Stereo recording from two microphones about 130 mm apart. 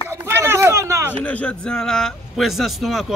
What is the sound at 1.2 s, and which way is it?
Speech, 10° left (ahead or behind).